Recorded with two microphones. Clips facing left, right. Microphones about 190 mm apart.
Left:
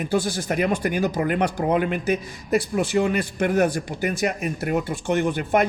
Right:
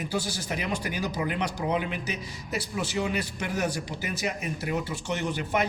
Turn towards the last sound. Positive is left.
turn(degrees=55)  # may be behind; listen again after turning